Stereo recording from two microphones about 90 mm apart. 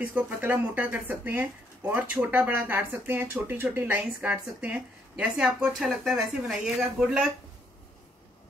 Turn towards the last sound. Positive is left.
turn(degrees=-5)  # may be behind; listen again after turning